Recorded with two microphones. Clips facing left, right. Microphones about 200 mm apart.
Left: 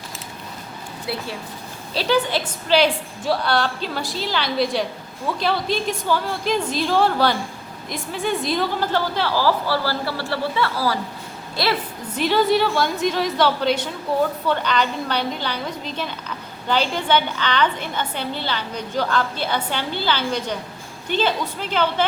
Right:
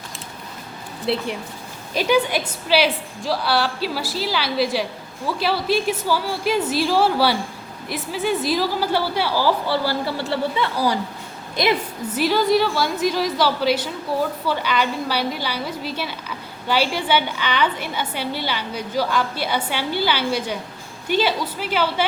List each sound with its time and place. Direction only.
1.0 s a woman's voice: 25° right (ahead or behind)
12.1 s a woman's voice: centre (ahead or behind)